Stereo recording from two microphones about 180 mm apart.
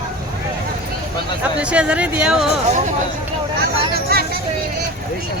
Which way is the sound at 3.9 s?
60° right (ahead or behind).